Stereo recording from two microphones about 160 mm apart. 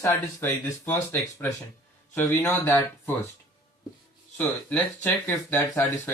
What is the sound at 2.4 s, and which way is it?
Speech, 15° left (ahead or behind).